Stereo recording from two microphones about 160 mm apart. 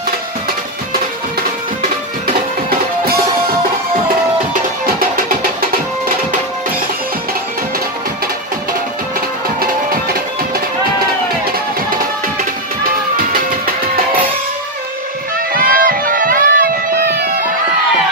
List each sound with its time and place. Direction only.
15.5 s music: 60° right (ahead or behind)